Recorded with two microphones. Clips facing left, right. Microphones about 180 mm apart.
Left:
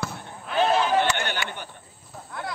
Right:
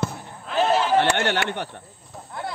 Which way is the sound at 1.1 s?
65° right (ahead or behind).